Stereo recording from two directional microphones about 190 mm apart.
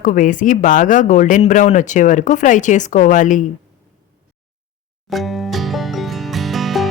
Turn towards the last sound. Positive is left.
turn(degrees=0)  # may be behind; listen again after turning